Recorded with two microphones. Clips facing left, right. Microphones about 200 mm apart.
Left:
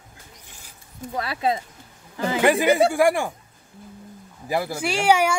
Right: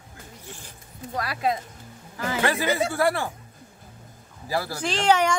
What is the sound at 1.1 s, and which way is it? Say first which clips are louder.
Speech: left 2 dB; 25° left (ahead or behind).